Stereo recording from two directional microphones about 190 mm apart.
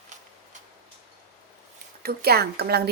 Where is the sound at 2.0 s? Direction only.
55° right (ahead or behind).